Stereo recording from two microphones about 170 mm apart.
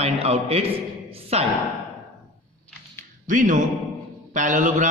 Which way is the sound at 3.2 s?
50° right (ahead or behind).